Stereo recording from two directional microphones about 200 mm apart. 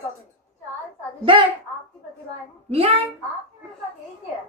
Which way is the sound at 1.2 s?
25° right (ahead or behind).